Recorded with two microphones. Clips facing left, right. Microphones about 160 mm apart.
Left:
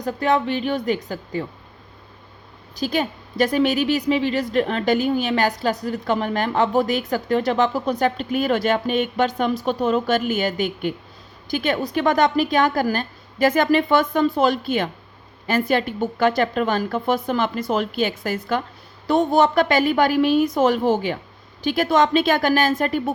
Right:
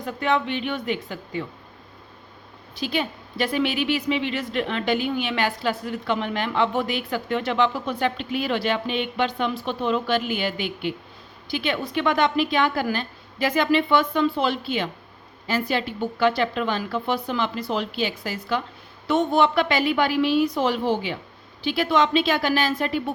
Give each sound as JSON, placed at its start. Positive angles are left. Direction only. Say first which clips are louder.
{"t": 0.0, "sound": "a woman's voice", "louder": "left 3 dB", "side_deg": 40}
{"t": 2.7, "sound": "a woman's voice", "louder": "left 4 dB", "side_deg": 40}
{"t": 19.0, "sound": "a woman's voice", "louder": "left 3 dB", "side_deg": 40}